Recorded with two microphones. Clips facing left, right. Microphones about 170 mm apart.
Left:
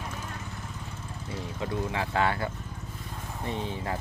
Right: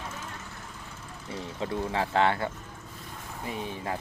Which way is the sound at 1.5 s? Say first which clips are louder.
Right 2 dB; 30° right (ahead or behind).